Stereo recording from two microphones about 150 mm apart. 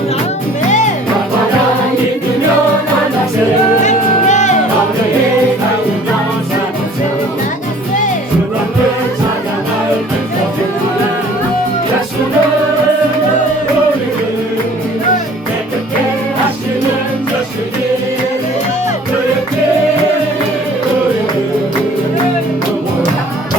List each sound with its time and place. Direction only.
3.8 s music: 50° left (ahead or behind)